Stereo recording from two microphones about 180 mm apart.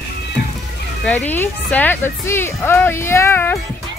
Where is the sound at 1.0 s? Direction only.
10° left (ahead or behind).